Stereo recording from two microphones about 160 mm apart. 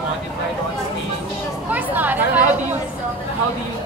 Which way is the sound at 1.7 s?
10° right (ahead or behind).